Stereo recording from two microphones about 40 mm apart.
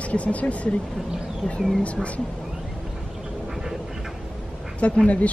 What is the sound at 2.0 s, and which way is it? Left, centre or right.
Speech, centre.